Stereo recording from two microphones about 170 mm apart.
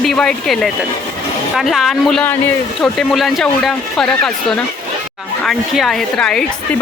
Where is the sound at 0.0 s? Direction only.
5° left (ahead or behind).